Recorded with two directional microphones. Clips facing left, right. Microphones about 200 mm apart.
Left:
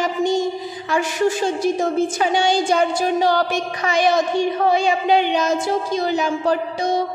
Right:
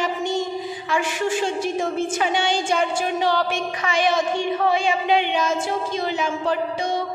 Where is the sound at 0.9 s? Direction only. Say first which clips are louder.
Left 4 dB; 40° left (ahead or behind).